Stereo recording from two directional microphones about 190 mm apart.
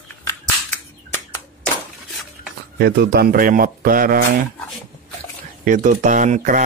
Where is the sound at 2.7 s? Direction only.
60° right (ahead or behind).